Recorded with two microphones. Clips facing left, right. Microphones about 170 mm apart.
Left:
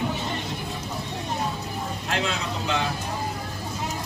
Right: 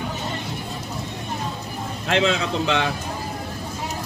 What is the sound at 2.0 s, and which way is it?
Speech, 80° right.